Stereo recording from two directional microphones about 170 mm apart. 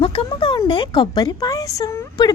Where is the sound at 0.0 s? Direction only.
30° left (ahead or behind).